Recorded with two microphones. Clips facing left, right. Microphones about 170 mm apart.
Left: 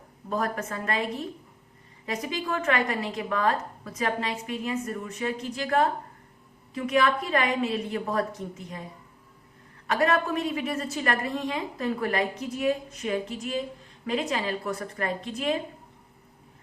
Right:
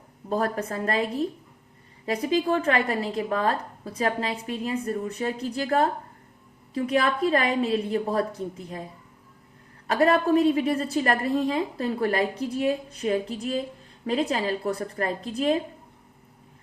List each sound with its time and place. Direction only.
0.3 s a woman's voice: 35° right (ahead or behind)
9.8 s a woman's voice: 30° right (ahead or behind)